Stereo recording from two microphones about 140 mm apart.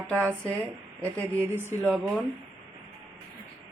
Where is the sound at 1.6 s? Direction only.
15° right (ahead or behind).